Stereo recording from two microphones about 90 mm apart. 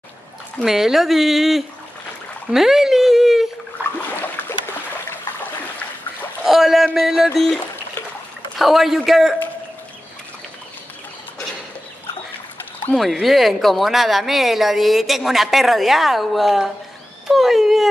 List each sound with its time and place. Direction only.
0.7 s a woman's voice: 5° right (ahead or behind)
2.5 s dog: 5° right (ahead or behind)
3.8 s a sound: 20° right (ahead or behind)
6.4 s rowboat: centre (ahead or behind)
7.0 s a woman's voice: 5° right (ahead or behind)
12.9 s a woman's voice: centre (ahead or behind)